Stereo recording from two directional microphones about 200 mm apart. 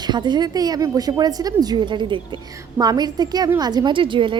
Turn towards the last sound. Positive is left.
turn(degrees=-25)  # may be behind; listen again after turning